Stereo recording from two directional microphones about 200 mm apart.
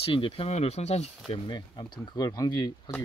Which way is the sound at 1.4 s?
20° left (ahead or behind).